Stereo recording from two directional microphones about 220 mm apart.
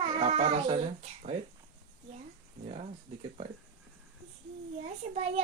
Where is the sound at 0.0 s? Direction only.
30° right (ahead or behind).